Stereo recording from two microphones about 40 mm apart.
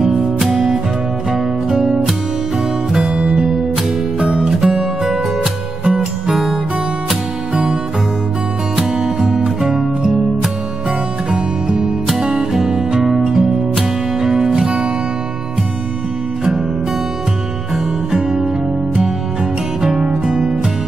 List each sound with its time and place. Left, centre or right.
1.3 s music: centre
4.2 s music: right
4.6 s music: centre
8.7 s music: centre
11.3 s music: centre
19.9 s music: right